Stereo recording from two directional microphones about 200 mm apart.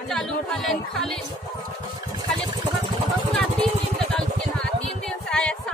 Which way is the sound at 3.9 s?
Centre (ahead or behind).